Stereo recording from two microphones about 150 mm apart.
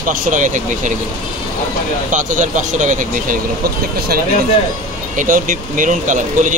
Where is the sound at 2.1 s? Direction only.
60° right (ahead or behind).